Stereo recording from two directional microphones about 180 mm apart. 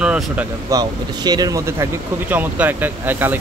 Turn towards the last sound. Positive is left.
turn(degrees=-10)  # may be behind; listen again after turning